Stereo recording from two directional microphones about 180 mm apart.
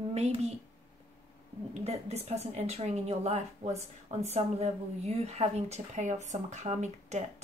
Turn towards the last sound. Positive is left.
turn(degrees=-40)  # may be behind; listen again after turning